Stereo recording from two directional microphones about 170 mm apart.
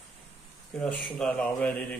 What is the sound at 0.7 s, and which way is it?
A man's voice, 5° left (ahead or behind).